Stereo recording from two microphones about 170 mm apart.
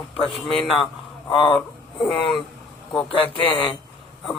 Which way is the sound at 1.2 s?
30° left (ahead or behind).